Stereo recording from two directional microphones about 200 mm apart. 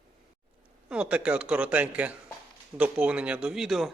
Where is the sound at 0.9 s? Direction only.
5° right (ahead or behind).